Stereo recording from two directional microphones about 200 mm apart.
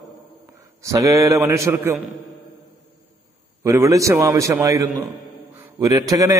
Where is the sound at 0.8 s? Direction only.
15° right (ahead or behind).